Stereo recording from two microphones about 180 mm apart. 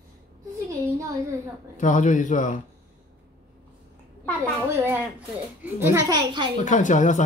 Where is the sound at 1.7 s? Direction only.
45° left (ahead or behind).